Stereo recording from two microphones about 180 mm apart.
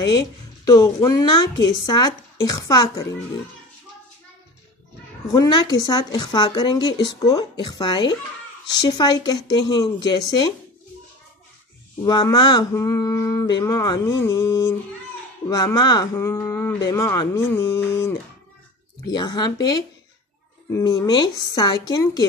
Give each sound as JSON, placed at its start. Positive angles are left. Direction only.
{"t": 0.7, "sound": "a woman's voice", "side_deg": 20}
{"t": 5.3, "sound": "a woman's voice", "side_deg": 25}
{"t": 12.0, "sound": "a woman's voice", "side_deg": 25}